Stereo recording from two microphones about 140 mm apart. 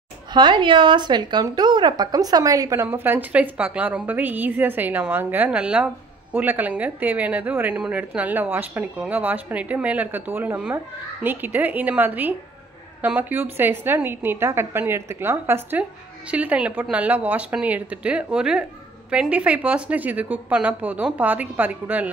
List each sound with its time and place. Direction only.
0.3 s a woman's voice: 35° right (ahead or behind); by 22.1 s 10° right (ahead or behind)